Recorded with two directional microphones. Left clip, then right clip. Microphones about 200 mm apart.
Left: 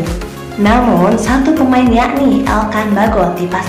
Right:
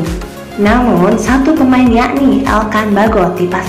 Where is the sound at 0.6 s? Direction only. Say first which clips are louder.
Even; 5° right (ahead or behind).